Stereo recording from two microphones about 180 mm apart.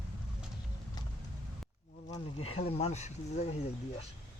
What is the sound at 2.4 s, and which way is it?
Speech, 35° left (ahead or behind).